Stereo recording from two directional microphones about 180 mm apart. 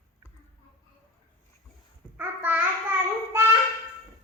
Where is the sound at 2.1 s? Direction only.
10° right (ahead or behind).